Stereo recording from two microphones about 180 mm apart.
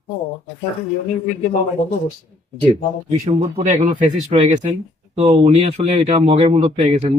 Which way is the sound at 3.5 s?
45° right (ahead or behind).